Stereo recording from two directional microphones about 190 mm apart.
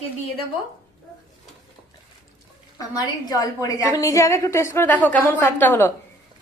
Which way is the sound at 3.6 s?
15° left (ahead or behind).